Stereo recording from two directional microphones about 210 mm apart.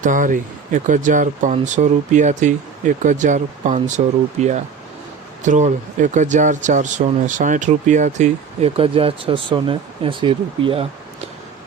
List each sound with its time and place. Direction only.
0.0 s speech: 40° right (ahead or behind)